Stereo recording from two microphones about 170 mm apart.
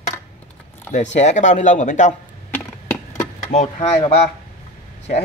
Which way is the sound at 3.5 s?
40° left (ahead or behind).